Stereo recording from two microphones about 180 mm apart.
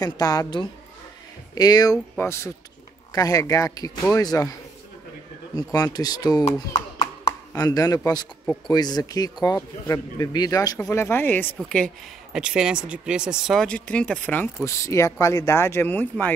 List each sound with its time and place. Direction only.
0.0 s speech: 20° left (ahead or behind)
5.6 s speech: 20° left (ahead or behind)
7.5 s speech: 20° left (ahead or behind)